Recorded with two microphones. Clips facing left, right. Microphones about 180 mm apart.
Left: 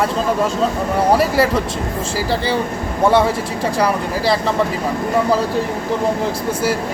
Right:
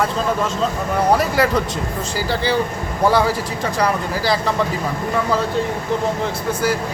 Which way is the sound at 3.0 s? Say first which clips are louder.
Left 2 dB; centre (ahead or behind).